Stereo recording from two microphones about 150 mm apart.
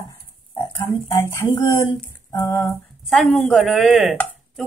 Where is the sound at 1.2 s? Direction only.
20° left (ahead or behind).